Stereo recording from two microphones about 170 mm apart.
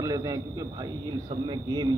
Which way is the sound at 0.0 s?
20° right (ahead or behind).